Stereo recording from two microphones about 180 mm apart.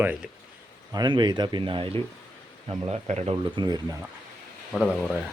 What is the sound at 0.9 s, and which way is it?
Speech, 25° right (ahead or behind).